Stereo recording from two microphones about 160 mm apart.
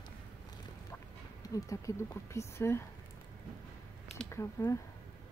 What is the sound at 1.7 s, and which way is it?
Speech, 20° left (ahead or behind).